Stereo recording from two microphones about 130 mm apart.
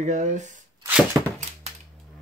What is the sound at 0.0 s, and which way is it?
Speech, 65° right (ahead or behind).